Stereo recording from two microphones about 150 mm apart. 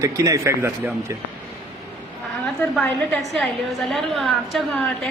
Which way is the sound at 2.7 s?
5° left (ahead or behind).